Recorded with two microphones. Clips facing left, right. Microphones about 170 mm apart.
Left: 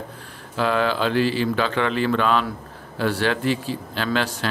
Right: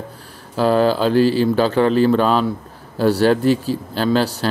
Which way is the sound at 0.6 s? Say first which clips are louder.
Right 6 dB; 35° right (ahead or behind).